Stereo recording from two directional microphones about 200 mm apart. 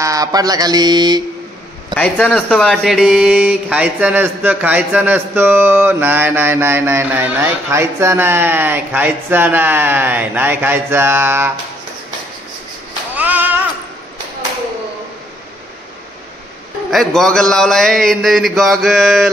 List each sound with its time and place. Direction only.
0.0 s speech: 15° right (ahead or behind)
2.0 s speech: 5° left (ahead or behind); by 11.5 s 10° right (ahead or behind)
13.1 s a sound: 10° right (ahead or behind)
16.9 s a man's voice: centre (ahead or behind)